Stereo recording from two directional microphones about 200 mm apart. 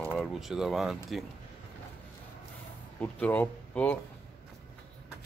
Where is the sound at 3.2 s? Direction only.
5° left (ahead or behind).